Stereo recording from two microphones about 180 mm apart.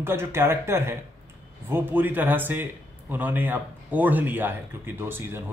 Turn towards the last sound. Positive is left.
turn(degrees=-10)  # may be behind; listen again after turning